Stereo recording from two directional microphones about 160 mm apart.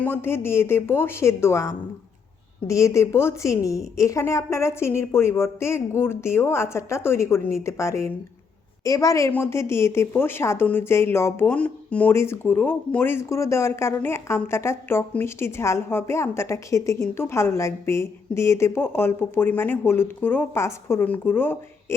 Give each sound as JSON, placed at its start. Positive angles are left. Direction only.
{"t": 0.0, "sound": "a woman's voice", "side_deg": 15}